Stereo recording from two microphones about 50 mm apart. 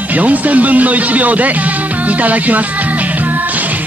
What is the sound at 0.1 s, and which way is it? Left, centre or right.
Speech, right.